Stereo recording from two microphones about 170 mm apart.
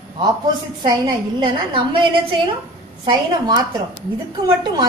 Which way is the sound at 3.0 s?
25° right (ahead or behind).